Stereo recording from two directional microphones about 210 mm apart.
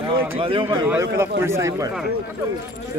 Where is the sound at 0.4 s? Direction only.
25° right (ahead or behind).